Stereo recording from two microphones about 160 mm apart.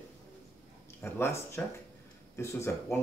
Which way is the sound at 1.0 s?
15° left (ahead or behind).